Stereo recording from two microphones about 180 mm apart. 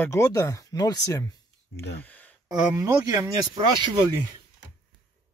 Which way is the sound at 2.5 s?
20° right (ahead or behind).